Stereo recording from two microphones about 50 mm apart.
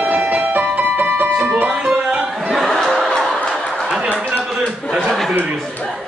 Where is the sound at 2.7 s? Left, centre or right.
Centre.